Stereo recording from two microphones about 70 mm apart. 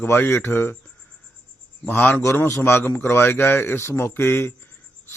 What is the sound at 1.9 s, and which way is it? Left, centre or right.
Speech, left.